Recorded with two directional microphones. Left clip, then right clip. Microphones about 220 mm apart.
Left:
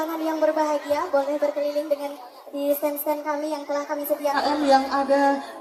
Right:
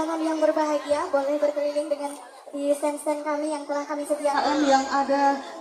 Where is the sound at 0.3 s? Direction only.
40° left (ahead or behind).